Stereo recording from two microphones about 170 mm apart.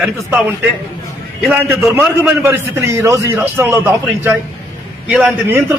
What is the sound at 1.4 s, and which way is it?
A man's voice, 5° right (ahead or behind).